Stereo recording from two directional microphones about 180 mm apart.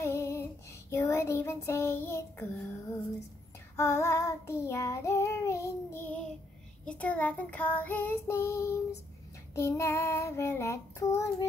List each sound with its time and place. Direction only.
0.0 s child singing: 15° left (ahead or behind)
3.7 s child singing: 15° left (ahead or behind)